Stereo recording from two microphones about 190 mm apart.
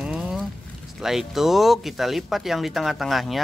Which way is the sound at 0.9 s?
Centre (ahead or behind).